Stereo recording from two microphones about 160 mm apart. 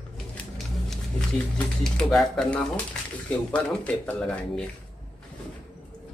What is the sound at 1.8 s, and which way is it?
Speech, centre (ahead or behind).